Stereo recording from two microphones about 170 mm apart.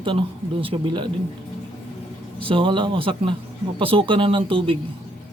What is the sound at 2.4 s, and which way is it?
Speech, 30° right (ahead or behind).